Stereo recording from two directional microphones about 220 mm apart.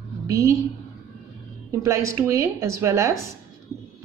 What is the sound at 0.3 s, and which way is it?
Speech, 15° right (ahead or behind).